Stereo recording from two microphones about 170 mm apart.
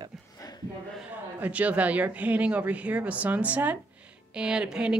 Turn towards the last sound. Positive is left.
turn(degrees=-5)  # may be behind; listen again after turning